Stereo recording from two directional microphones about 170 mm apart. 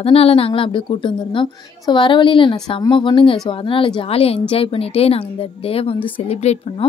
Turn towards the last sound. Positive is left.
turn(degrees=40)  # may be behind; listen again after turning